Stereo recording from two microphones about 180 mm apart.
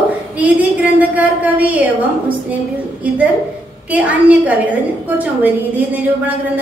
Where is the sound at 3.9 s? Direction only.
10° right (ahead or behind).